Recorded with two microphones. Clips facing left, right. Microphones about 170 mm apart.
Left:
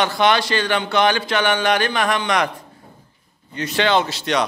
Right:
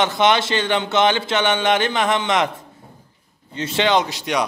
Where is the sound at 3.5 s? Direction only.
25° right (ahead or behind).